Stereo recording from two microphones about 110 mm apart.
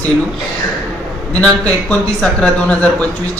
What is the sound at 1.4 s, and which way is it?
A man's voice, 10° left (ahead or behind).